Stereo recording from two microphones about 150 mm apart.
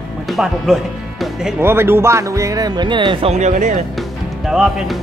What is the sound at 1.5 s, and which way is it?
Speech, 15° right (ahead or behind).